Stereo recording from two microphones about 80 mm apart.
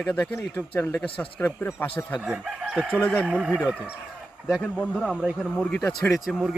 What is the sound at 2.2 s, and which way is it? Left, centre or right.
Chicken, centre.